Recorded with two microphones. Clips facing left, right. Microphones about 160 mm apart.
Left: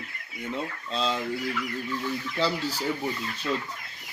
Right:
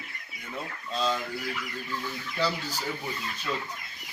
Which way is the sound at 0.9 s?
25° left (ahead or behind).